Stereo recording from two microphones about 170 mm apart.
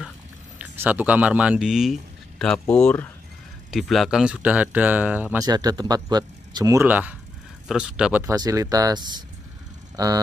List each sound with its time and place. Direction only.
0.6 s speech: 10° right (ahead or behind)
5.5 s speech: 20° right (ahead or behind); by 8.2 s 5° right (ahead or behind)
8.2 s speech: 20° right (ahead or behind)